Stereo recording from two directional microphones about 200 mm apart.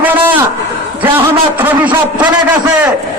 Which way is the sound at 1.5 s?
10° right (ahead or behind).